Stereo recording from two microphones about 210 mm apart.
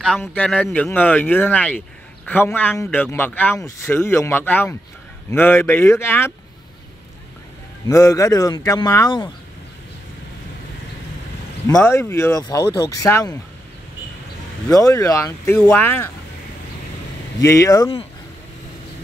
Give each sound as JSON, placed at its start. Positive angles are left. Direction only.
{"t": 0.0, "sound": "speech", "side_deg": 5}
{"t": 7.9, "sound": "speech", "side_deg": 15}
{"t": 11.6, "sound": "speech", "side_deg": 15}
{"t": 14.7, "sound": "speech", "side_deg": 15}
{"t": 17.4, "sound": "speech", "side_deg": 15}